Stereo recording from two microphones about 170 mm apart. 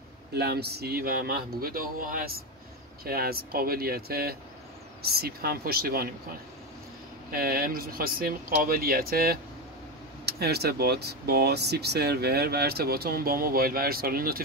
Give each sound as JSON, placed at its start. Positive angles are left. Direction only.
{"t": 0.3, "sound": "speech", "side_deg": -70}
{"t": 7.2, "sound": "speech", "side_deg": -60}
{"t": 10.2, "sound": "speech", "side_deg": -70}